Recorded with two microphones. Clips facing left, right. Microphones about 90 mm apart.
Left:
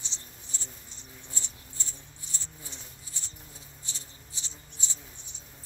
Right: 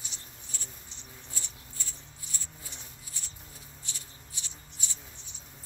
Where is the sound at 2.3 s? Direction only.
30° left (ahead or behind).